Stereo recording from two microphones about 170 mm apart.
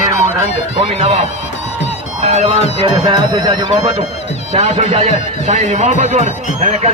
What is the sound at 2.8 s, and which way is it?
Speech, 25° right (ahead or behind).